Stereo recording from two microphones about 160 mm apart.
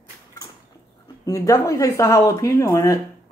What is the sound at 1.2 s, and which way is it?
Speech, 20° left (ahead or behind).